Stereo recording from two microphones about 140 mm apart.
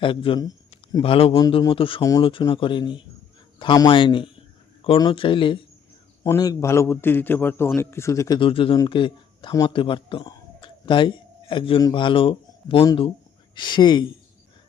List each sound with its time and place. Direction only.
0.0 s speech: 40° left (ahead or behind)
2.0 s speech: 25° left (ahead or behind)
2.4 s speech: 35° left (ahead or behind)
6.2 s a man's voice: 25° left (ahead or behind)
8.4 s speech: 40° left (ahead or behind)